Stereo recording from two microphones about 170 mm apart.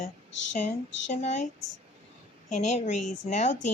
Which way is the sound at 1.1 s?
40° left (ahead or behind).